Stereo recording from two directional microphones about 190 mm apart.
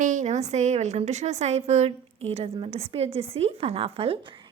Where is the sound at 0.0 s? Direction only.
40° right (ahead or behind).